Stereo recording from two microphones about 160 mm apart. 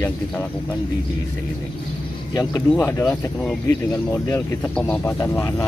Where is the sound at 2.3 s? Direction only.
25° left (ahead or behind).